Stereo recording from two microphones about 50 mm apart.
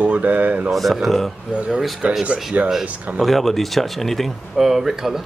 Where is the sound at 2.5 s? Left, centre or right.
Right.